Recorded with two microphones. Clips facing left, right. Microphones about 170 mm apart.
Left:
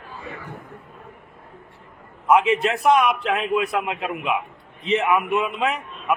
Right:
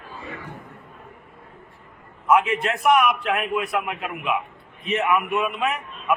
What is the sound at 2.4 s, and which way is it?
A man's voice, 20° left (ahead or behind).